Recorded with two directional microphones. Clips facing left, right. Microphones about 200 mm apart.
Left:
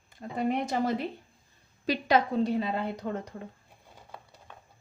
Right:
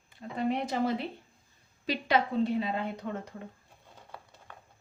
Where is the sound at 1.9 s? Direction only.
40° left (ahead or behind).